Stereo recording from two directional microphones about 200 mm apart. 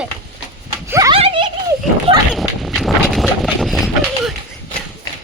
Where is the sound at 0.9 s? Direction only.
15° right (ahead or behind).